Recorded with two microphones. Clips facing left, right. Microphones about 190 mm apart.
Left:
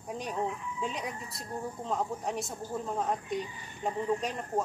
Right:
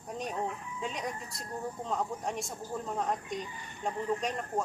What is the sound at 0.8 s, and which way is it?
Speech, centre (ahead or behind).